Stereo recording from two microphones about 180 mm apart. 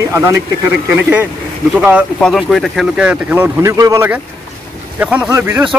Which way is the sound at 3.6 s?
20° right (ahead or behind).